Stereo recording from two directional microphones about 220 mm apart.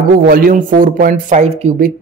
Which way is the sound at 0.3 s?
40° right (ahead or behind).